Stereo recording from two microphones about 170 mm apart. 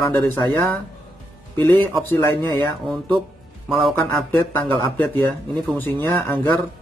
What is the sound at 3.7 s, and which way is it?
A man's voice, centre (ahead or behind).